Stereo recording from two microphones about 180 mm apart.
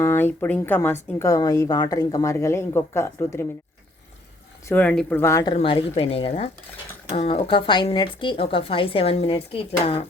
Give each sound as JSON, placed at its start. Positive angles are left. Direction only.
{"t": 0.0, "sound": "a woman's voice", "side_deg": 10}
{"t": 4.6, "sound": "a woman's voice", "side_deg": 10}
{"t": 5.5, "sound": "speech", "side_deg": 35}